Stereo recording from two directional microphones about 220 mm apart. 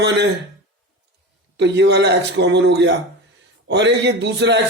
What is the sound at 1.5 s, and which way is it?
A man's voice, 50° right (ahead or behind).